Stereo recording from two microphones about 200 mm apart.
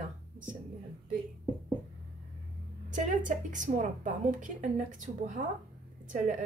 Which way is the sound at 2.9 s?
40° right (ahead or behind).